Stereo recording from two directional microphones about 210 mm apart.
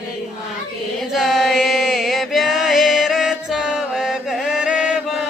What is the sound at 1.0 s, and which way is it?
Chant, centre (ahead or behind).